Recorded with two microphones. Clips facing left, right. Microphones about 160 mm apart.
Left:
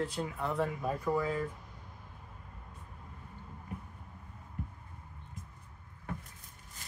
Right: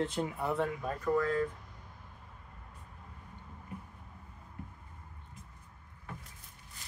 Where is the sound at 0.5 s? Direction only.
5° left (ahead or behind).